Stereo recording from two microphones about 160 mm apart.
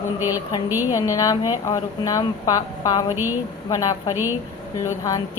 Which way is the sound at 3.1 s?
15° right (ahead or behind).